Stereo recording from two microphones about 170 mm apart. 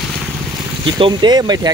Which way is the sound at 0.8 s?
25° right (ahead or behind).